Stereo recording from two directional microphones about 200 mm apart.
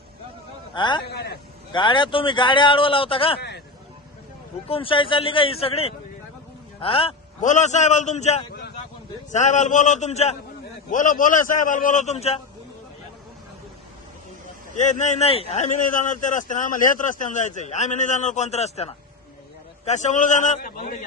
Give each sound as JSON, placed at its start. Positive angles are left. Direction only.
{"t": 0.7, "sound": "a man's voice", "side_deg": 25}
{"t": 1.0, "sound": "speech", "side_deg": 55}
{"t": 1.7, "sound": "a man's voice", "side_deg": 25}
{"t": 4.7, "sound": "a man's voice", "side_deg": 25}
{"t": 14.8, "sound": "a man's voice", "side_deg": 35}